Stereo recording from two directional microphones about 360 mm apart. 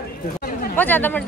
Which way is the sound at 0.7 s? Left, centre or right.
Centre.